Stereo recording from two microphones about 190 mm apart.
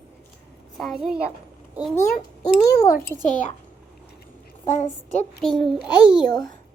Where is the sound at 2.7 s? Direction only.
15° left (ahead or behind).